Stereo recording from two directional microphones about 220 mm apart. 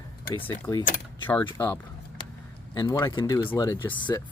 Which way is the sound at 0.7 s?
20° left (ahead or behind).